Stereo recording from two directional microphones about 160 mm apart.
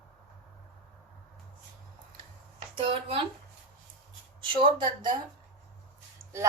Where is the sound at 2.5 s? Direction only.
35° right (ahead or behind).